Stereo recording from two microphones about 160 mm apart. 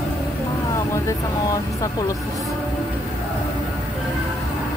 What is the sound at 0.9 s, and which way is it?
Speech, 20° left (ahead or behind).